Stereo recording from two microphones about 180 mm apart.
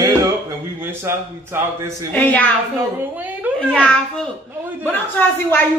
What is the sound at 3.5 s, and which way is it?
Speech, 5° left (ahead or behind).